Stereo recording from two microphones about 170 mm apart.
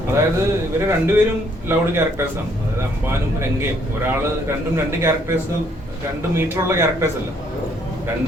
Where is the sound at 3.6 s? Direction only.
15° right (ahead or behind).